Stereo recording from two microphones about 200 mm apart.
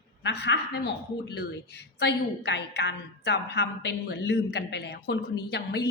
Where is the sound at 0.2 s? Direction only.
60° left (ahead or behind).